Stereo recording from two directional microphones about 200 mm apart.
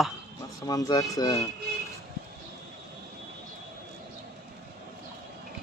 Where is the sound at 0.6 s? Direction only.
20° left (ahead or behind).